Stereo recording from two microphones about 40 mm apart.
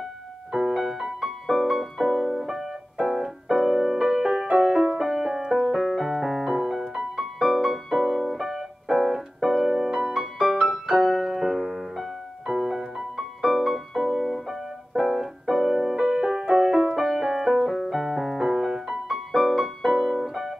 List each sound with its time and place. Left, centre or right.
0.5 s music: centre
2.0 s piano: centre
2.3 s keyboard: centre
3.1 s piano: centre
4.3 s music: right
4.9 s music: centre
8.4 s piano: centre
14.2 s piano: centre
15.0 s piano: centre
18.5 s music: centre